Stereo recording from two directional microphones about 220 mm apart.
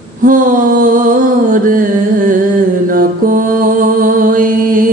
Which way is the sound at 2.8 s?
40° right (ahead or behind).